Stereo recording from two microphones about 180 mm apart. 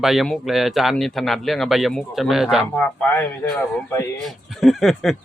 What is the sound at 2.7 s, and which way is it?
Speech, 10° left (ahead or behind).